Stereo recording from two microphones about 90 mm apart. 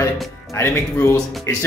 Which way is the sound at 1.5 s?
30° left (ahead or behind).